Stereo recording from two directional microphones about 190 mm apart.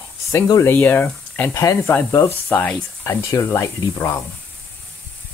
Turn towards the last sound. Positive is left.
turn(degrees=15)  # may be behind; listen again after turning